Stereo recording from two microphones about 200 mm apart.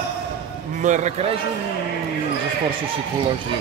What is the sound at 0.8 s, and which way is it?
Speech, 40° right (ahead or behind).